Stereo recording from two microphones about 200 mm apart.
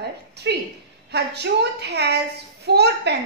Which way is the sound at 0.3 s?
55° right (ahead or behind).